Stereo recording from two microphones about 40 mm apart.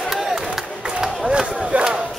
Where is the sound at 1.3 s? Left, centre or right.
Right.